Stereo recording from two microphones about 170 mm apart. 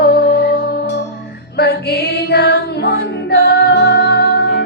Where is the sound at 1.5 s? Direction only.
70° left (ahead or behind).